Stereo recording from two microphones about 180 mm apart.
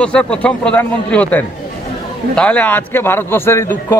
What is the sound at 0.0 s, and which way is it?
Speech, 5° left (ahead or behind).